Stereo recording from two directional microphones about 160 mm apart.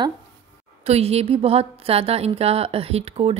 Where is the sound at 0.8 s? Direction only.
40° right (ahead or behind).